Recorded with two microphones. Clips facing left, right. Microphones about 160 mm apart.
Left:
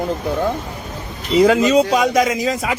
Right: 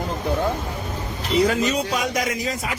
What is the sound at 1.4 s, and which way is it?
Speech, 90° left.